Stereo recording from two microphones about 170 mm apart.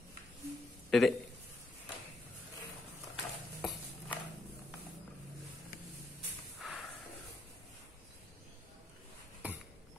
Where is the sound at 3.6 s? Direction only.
Centre (ahead or behind).